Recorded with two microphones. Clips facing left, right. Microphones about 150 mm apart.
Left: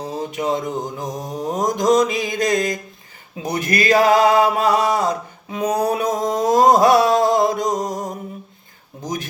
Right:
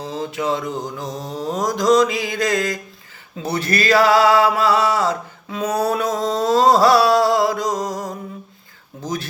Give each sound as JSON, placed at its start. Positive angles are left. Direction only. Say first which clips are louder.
{"t": 0.0, "sound": "mantra", "louder": "even", "side_deg": 15}
{"t": 0.5, "sound": "mantra", "louder": "left 1 dB", "side_deg": 40}
{"t": 1.0, "sound": "mantra", "louder": "left 1 dB", "side_deg": 15}
{"t": 4.0, "sound": "a sound", "louder": "even", "side_deg": 20}
{"t": 7.3, "sound": "music", "louder": "left 1 dB", "side_deg": 20}
{"t": 7.8, "sound": "music", "louder": "left 1 dB", "side_deg": 45}
{"t": 9.0, "sound": "speech", "louder": "right 1 dB", "side_deg": 15}